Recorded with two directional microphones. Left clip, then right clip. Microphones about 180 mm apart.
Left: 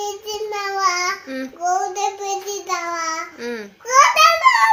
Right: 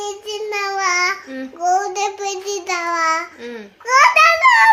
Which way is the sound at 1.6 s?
25° right (ahead or behind).